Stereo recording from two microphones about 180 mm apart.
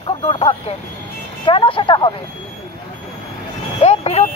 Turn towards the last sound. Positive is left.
turn(degrees=35)  # may be behind; listen again after turning